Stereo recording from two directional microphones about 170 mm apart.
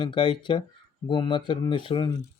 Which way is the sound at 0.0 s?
30° left (ahead or behind).